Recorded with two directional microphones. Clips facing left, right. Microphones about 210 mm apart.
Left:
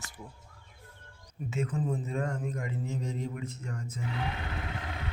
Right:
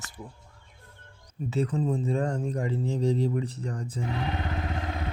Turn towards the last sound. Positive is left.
turn(degrees=-35)  # may be behind; listen again after turning